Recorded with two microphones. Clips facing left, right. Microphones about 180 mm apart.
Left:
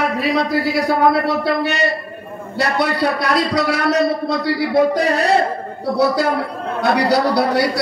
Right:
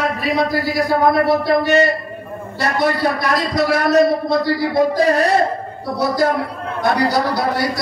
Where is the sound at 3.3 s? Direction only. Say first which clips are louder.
Even; 65° left (ahead or behind).